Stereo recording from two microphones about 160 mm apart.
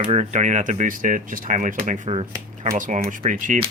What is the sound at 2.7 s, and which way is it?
Speech, 50° right (ahead or behind).